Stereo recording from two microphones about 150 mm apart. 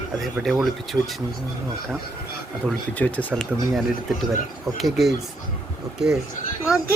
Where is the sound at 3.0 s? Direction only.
10° left (ahead or behind).